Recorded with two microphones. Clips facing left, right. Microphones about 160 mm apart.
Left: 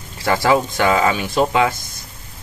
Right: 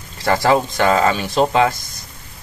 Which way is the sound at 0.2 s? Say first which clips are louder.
Right 1 dB; 10° left (ahead or behind).